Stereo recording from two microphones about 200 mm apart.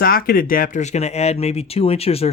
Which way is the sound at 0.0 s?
50° left (ahead or behind).